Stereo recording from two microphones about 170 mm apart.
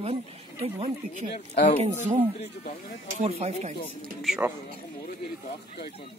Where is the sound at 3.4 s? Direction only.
40° right (ahead or behind).